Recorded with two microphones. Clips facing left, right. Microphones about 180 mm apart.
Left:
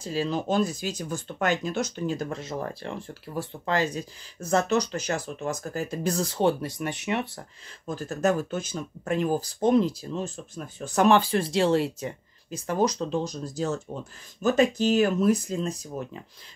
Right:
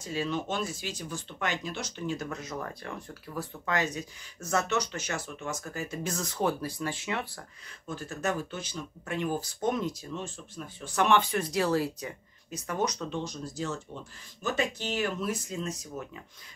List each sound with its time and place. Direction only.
0.0 s speech: 35° left (ahead or behind)
7.8 s speech: 40° left (ahead or behind)